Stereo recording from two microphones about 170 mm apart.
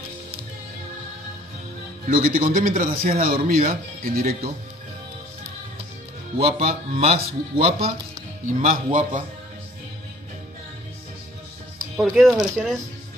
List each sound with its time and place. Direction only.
2.0 s a man's voice: 55° right (ahead or behind)
6.3 s speech: 35° right (ahead or behind)
8.5 s a man's voice: 50° right (ahead or behind)
12.0 s speech: centre (ahead or behind)